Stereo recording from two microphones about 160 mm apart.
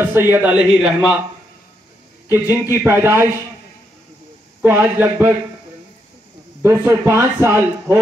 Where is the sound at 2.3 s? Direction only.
15° right (ahead or behind).